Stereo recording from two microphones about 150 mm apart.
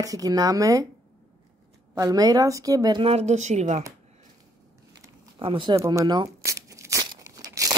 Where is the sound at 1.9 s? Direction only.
25° right (ahead or behind).